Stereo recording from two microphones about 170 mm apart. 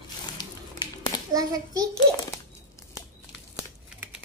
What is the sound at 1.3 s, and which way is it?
Speech, 20° right (ahead or behind).